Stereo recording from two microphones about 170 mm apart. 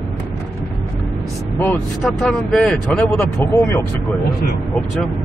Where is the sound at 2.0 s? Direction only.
Centre (ahead or behind).